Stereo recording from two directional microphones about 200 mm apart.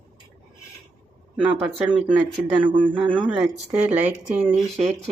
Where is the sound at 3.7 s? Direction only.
10° right (ahead or behind).